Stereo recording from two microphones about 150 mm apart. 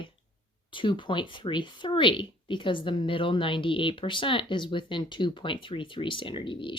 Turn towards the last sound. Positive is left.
turn(degrees=35)  # may be behind; listen again after turning